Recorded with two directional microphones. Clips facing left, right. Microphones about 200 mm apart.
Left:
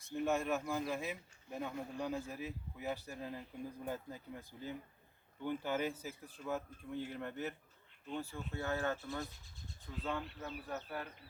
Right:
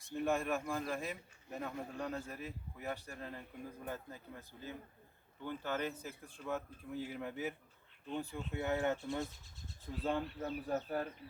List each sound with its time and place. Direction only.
0.1 s a man's voice: centre (ahead or behind); by 9.0 s 20° right (ahead or behind)
10.0 s speech: 35° right (ahead or behind)
10.8 s speech: 45° right (ahead or behind)